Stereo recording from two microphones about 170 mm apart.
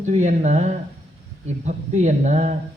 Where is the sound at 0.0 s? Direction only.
45° right (ahead or behind).